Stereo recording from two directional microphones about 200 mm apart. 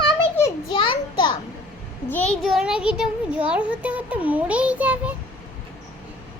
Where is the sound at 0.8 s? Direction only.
25° left (ahead or behind).